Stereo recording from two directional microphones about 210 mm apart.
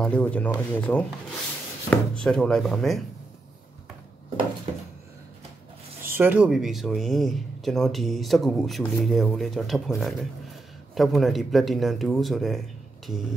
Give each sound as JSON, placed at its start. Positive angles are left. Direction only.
{"t": 0.0, "sound": "speech", "side_deg": 5}
{"t": 4.7, "sound": "a sound", "side_deg": -30}
{"t": 6.1, "sound": "speech", "side_deg": -10}